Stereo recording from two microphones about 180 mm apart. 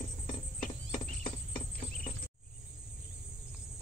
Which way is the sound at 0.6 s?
50° left (ahead or behind).